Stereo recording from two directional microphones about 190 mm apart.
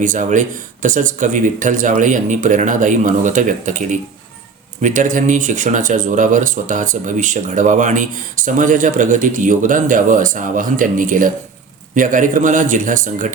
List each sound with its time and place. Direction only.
0.0 s speech: 45° right (ahead or behind)